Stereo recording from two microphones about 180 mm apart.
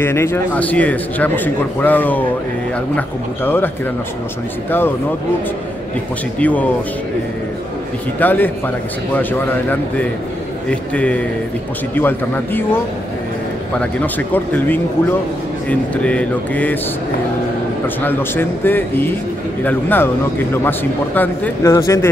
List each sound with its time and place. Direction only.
0.0 s a man's voice: 15° left (ahead or behind)
6.4 s a man's voice: 10° left (ahead or behind)
8.2 s a man's voice: 10° left (ahead or behind)
10.7 s a man's voice: 5° left (ahead or behind)
18.0 s a man's voice: 10° left (ahead or behind)